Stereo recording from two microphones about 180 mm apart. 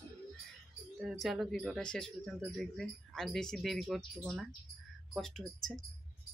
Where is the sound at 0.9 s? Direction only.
Centre (ahead or behind).